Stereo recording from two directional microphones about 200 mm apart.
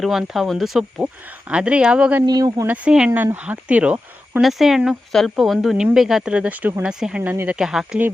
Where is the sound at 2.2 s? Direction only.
20° right (ahead or behind).